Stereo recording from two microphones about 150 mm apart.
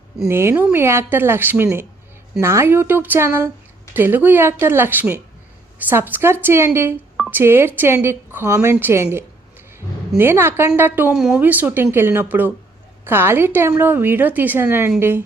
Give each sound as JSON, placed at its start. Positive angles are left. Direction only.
{"t": 0.3, "sound": "a woman's voice", "side_deg": -15}
{"t": 10.2, "sound": "a woman's voice", "side_deg": -15}